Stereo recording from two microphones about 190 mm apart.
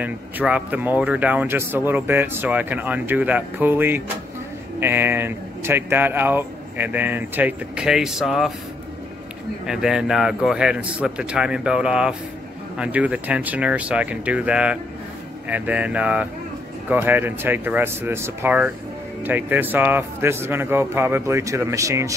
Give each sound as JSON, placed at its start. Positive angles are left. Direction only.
{"t": 0.0, "sound": "speech", "side_deg": -5}
{"t": 9.7, "sound": "speech", "side_deg": -5}